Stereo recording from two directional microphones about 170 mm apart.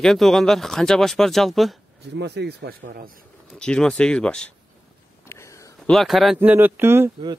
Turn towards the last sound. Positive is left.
turn(degrees=-15)  # may be behind; listen again after turning